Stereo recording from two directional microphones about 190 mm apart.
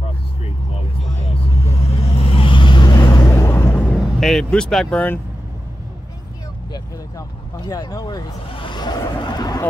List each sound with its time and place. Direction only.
1.7 s vehicle: 35° left (ahead or behind)
3.4 s vehicle: 10° left (ahead or behind)
6.7 s vehicle: 20° left (ahead or behind)